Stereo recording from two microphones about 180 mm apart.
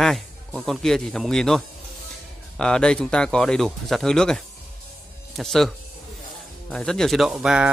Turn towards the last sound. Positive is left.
turn(degrees=-5)  # may be behind; listen again after turning